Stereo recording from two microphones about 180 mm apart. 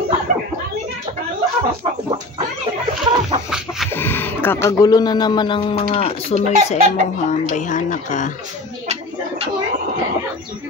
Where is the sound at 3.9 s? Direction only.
10° left (ahead or behind); by 8.3 s 45° left (ahead or behind).